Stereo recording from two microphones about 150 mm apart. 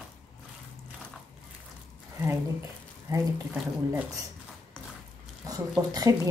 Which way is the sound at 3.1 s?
25° right (ahead or behind).